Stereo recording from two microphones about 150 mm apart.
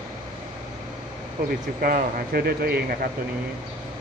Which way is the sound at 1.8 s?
80° right.